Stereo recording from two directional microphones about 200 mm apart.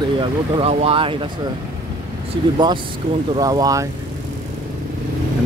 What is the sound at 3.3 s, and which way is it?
Speech, 20° right (ahead or behind).